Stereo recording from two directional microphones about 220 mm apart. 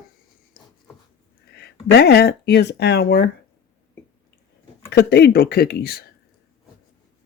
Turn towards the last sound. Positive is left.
turn(degrees=45)  # may be behind; listen again after turning